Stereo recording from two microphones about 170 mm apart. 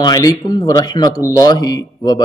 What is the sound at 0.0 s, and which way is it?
A man's voice, 25° left (ahead or behind).